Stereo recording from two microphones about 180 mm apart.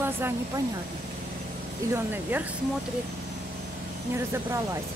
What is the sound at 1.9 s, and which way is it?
Speech, 10° right (ahead or behind).